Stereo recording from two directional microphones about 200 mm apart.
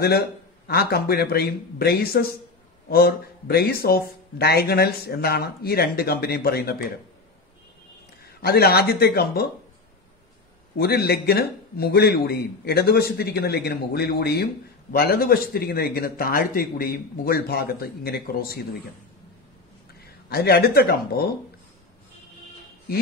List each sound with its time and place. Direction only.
0.7 s speech: 50° left (ahead or behind)
8.4 s speech: 50° left (ahead or behind)
10.8 s speech: 55° left (ahead or behind)
20.2 s speech: 50° left (ahead or behind)